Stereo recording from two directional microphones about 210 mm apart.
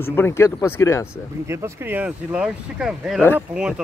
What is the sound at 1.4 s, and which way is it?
Speech, 15° right (ahead or behind).